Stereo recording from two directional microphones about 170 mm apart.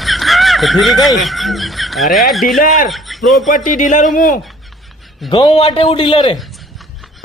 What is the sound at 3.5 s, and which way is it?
Speech, 50° left (ahead or behind).